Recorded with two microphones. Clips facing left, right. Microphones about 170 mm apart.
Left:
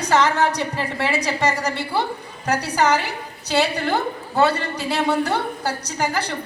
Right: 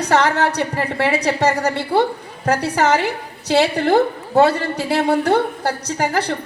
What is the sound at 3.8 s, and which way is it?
A woman's voice, 60° right (ahead or behind).